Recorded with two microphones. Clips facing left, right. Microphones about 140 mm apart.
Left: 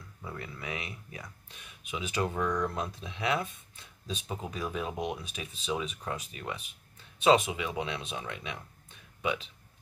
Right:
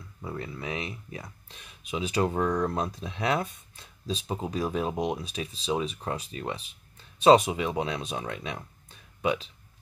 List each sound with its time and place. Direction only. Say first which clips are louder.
0.2 s speech: right 5 dB; 30° right (ahead or behind)